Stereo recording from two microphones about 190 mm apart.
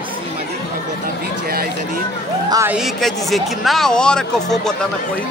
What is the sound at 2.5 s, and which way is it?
Speech, 15° right (ahead or behind).